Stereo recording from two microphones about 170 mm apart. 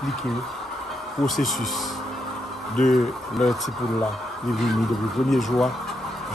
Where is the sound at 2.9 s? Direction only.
Centre (ahead or behind).